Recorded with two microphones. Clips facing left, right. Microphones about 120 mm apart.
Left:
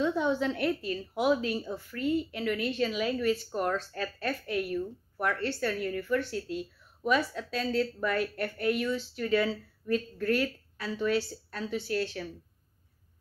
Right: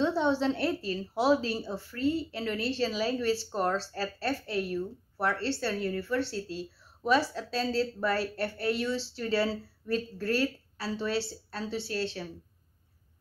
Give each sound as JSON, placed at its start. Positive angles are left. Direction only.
{"t": 0.0, "sound": "a woman's voice", "side_deg": -30}